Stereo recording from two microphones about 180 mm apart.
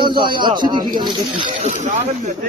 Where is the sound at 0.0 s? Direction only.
25° right (ahead or behind).